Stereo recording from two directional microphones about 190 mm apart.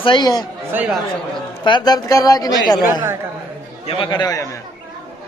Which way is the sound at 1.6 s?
20° left (ahead or behind).